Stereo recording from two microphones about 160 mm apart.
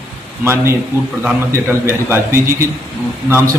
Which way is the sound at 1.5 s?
15° right (ahead or behind).